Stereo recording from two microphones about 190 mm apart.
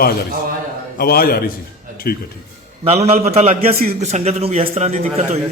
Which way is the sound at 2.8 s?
30° right (ahead or behind).